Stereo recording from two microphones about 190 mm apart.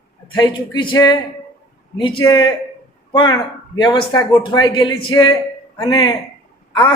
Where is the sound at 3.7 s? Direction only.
25° left (ahead or behind).